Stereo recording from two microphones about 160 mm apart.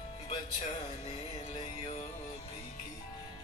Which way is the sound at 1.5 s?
35° left (ahead or behind).